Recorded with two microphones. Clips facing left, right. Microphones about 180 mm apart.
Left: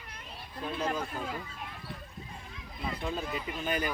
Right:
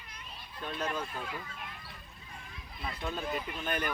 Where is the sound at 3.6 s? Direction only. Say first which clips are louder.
Left 4 dB; 10° left (ahead or behind).